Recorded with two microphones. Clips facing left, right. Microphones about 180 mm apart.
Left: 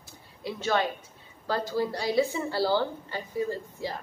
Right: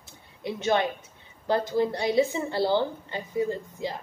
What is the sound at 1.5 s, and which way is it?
A woman's voice, 20° right (ahead or behind).